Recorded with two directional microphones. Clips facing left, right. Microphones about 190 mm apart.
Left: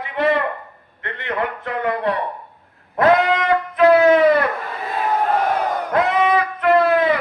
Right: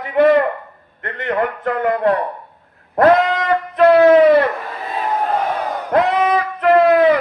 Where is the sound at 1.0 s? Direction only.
45° right (ahead or behind).